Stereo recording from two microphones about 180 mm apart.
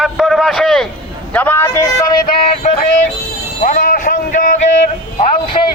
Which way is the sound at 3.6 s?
50° left (ahead or behind).